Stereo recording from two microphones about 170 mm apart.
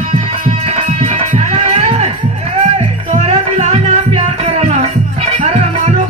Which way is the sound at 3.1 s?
40° right (ahead or behind).